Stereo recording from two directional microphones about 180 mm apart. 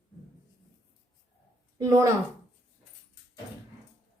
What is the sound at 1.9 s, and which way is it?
Speech, 15° right (ahead or behind).